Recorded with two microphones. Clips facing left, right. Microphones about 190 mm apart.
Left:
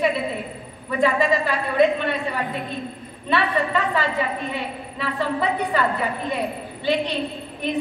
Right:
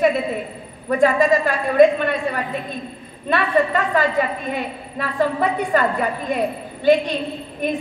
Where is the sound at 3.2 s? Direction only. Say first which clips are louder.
Right 4 dB; 45° right (ahead or behind).